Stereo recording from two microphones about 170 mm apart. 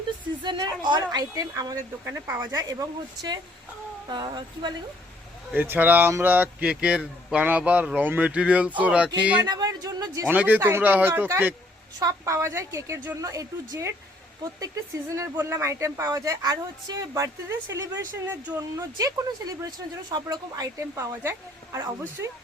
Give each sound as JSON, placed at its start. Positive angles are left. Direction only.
{"t": 0.4, "sound": "a woman's voice", "side_deg": -25}
{"t": 4.1, "sound": "a woman's voice", "side_deg": -25}
{"t": 5.5, "sound": "speech", "side_deg": -10}
{"t": 9.5, "sound": "a sound", "side_deg": -20}
{"t": 10.3, "sound": "speech", "side_deg": -10}
{"t": 15.1, "sound": "a woman's voice", "side_deg": -15}